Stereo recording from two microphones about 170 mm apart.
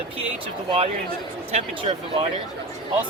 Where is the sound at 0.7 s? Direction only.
35° right (ahead or behind).